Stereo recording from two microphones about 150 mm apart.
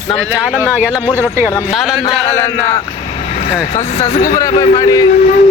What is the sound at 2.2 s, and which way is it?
Speech, 20° left (ahead or behind).